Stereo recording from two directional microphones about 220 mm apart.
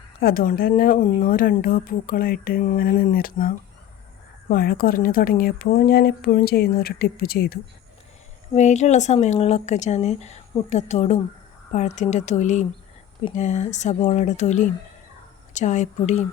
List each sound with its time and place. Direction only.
0.2 s a woman's voice: 40° left (ahead or behind)
8.5 s speech: 30° left (ahead or behind)